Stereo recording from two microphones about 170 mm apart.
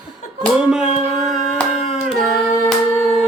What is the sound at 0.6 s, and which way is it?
Female singing, 5° right (ahead or behind).